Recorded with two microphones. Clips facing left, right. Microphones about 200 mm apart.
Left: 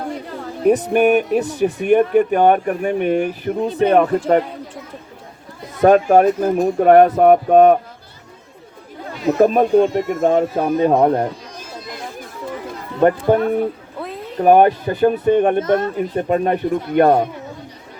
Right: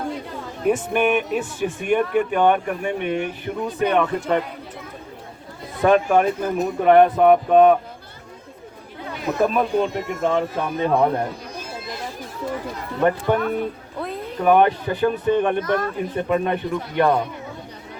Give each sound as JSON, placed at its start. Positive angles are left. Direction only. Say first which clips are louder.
{"t": 0.6, "sound": "speech", "louder": "left 6 dB", "side_deg": 40}
{"t": 5.8, "sound": "speech", "louder": "left 5 dB", "side_deg": 45}
{"t": 9.4, "sound": "speech", "louder": "left 7 dB", "side_deg": 45}
{"t": 13.0, "sound": "speech", "louder": "left 5 dB", "side_deg": 35}
{"t": 15.6, "sound": "speech", "louder": "left 5 dB", "side_deg": 25}
{"t": 16.1, "sound": "speech", "louder": "left 3 dB", "side_deg": 40}